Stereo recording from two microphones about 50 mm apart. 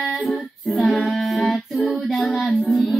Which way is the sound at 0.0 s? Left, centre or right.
Centre.